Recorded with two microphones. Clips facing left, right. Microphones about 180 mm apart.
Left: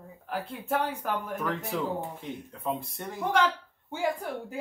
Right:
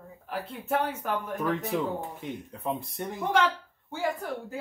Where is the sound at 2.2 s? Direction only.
20° right (ahead or behind).